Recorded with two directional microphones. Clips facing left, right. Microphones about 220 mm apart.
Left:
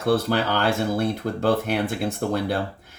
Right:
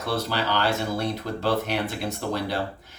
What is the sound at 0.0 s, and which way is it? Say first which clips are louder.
Speech: left 6 dB; 50° left (ahead or behind).